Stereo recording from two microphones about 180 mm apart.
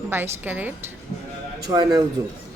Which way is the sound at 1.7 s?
20° right (ahead or behind).